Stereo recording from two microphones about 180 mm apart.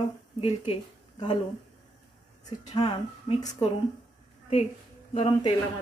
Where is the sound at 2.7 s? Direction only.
35° left (ahead or behind).